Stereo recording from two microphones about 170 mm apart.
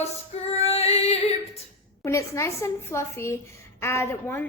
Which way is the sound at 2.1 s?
15° left (ahead or behind).